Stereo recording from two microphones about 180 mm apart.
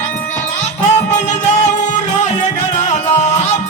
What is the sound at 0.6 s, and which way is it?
Music, 40° left (ahead or behind).